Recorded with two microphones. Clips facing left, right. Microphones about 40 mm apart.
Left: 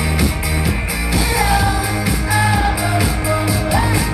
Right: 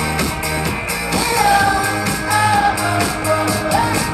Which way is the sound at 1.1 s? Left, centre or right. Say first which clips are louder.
Right 3 dB; centre.